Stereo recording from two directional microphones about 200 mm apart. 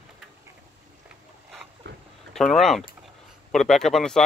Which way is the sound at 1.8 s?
60° right (ahead or behind).